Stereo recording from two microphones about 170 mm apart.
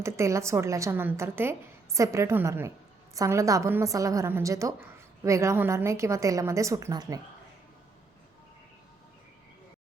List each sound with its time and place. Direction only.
0.0 s a woman's voice: 15° right (ahead or behind)